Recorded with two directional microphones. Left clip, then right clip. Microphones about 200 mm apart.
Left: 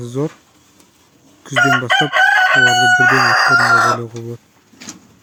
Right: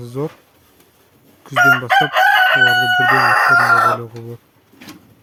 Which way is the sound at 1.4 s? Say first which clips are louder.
Right 1 dB; 10° left (ahead or behind).